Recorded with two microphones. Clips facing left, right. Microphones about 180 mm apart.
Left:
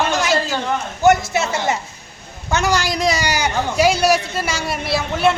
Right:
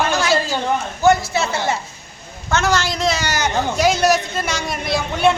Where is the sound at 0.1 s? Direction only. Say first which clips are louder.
Even; 20° left (ahead or behind).